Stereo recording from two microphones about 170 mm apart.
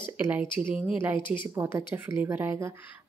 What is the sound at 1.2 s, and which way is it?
Speech, 30° left (ahead or behind).